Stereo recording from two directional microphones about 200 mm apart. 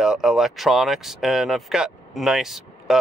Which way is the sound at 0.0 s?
5° right (ahead or behind).